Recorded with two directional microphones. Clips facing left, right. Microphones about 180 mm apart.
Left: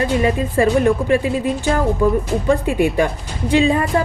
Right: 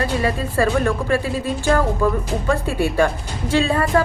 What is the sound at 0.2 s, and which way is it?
Speech, 15° left (ahead or behind).